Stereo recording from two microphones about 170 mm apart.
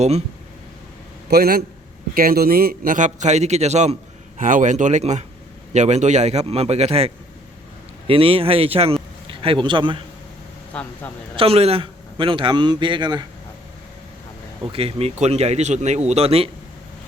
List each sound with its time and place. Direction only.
1.3 s a man's voice: 65° right (ahead or behind); by 10.0 s 30° right (ahead or behind)
10.7 s speech: 10° left (ahead or behind)
11.3 s a man's voice: 35° right (ahead or behind)
14.7 s speech: 35° right (ahead or behind)